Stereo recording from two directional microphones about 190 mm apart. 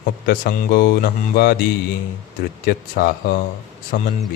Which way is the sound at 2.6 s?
50° left (ahead or behind).